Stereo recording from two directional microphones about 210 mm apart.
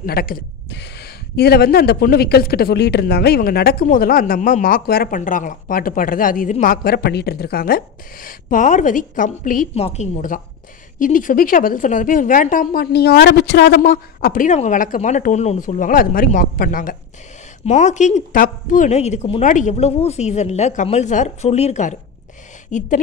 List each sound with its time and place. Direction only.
0.0 s a woman's voice: 45° left (ahead or behind)